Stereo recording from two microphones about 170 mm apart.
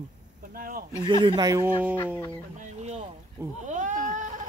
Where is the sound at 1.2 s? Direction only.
25° right (ahead or behind).